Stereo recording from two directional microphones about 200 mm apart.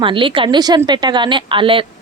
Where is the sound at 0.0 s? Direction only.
25° right (ahead or behind).